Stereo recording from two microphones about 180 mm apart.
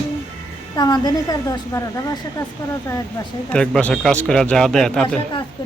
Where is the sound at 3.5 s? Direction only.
5° left (ahead or behind).